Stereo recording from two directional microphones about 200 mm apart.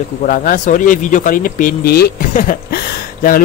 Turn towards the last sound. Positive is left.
turn(degrees=45)  # may be behind; listen again after turning